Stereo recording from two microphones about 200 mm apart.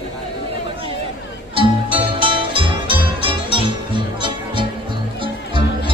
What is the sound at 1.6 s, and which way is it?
Music, 25° right (ahead or behind).